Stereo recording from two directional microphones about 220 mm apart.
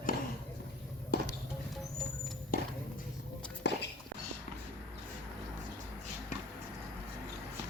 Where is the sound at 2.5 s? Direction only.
40° left (ahead or behind).